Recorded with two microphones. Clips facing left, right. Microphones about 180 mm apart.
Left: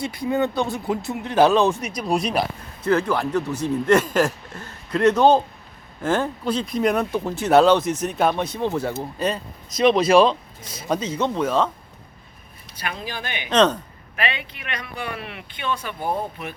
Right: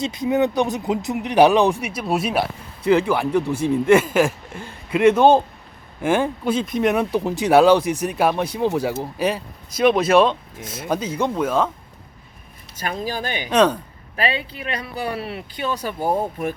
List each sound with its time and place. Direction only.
0.0 s speech: 20° right (ahead or behind)
12.7 s speech: 40° right (ahead or behind)
13.5 s speech: 10° right (ahead or behind)
14.2 s speech: 35° right (ahead or behind)